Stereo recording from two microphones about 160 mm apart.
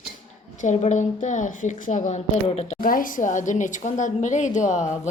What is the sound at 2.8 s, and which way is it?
A woman's voice, 60° left (ahead or behind).